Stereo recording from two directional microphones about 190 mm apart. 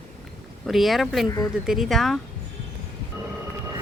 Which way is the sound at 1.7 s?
Centre (ahead or behind).